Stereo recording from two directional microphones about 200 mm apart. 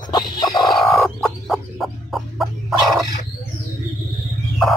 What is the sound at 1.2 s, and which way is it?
Fowl, centre (ahead or behind).